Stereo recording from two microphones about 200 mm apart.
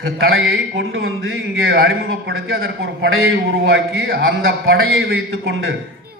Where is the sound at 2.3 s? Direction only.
80° right.